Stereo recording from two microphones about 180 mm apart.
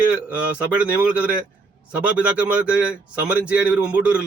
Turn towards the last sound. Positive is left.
turn(degrees=-5)  # may be behind; listen again after turning